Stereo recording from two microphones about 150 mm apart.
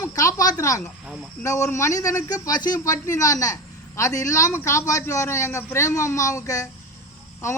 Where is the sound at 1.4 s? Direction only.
20° left (ahead or behind).